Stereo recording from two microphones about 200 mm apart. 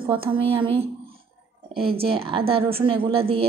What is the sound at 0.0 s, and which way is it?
Speech, 25° right (ahead or behind).